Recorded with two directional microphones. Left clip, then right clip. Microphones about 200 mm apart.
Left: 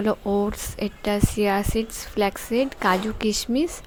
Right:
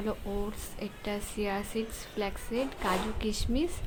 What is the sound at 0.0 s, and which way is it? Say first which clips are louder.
A woman's voice: left 12 dB; 40° left (ahead or behind).